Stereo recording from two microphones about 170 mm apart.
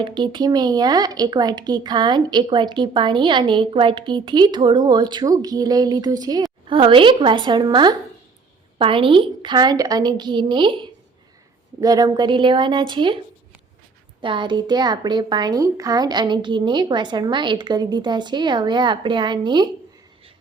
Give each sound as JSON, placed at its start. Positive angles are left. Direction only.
{"t": 0.0, "sound": "speech", "side_deg": -30}
{"t": 11.8, "sound": "speech", "side_deg": -20}
{"t": 14.2, "sound": "speech", "side_deg": -30}